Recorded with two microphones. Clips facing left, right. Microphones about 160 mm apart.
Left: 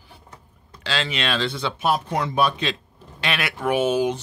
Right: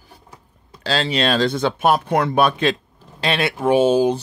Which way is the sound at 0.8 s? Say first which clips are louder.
Right 6 dB; 35° right (ahead or behind).